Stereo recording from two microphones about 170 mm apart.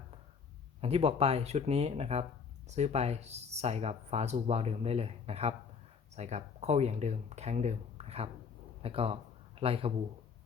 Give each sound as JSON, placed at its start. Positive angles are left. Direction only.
{"t": 0.8, "sound": "speech", "side_deg": -35}